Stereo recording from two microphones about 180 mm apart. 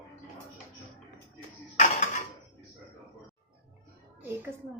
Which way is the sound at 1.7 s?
40° left (ahead or behind).